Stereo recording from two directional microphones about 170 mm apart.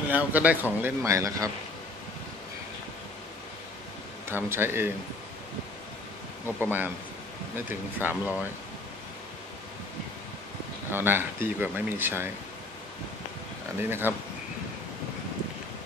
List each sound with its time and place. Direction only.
0.1 s speech: 10° right (ahead or behind)
4.3 s speech: 15° right (ahead or behind)
6.6 s speech: 10° right (ahead or behind)
10.9 s speech: 10° right (ahead or behind)
13.7 s speech: 15° right (ahead or behind)